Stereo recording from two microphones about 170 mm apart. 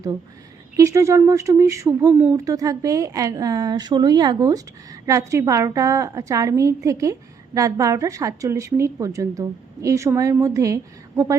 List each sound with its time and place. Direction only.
0.8 s a woman's voice: 15° right (ahead or behind)